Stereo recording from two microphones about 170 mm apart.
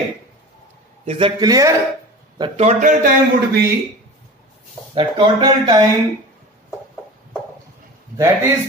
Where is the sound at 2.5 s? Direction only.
45° right (ahead or behind).